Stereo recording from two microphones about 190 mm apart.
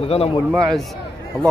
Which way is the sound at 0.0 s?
30° left (ahead or behind).